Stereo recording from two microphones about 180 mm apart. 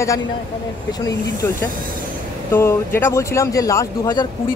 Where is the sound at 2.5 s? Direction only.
10° left (ahead or behind).